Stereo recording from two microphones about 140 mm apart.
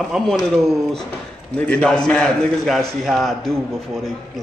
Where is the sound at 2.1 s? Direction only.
Centre (ahead or behind).